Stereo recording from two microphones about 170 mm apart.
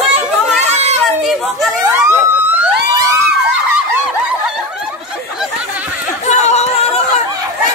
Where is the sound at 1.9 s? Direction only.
15° right (ahead or behind).